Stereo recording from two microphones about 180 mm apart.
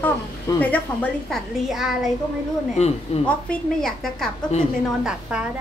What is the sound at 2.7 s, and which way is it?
Speech, 35° left (ahead or behind).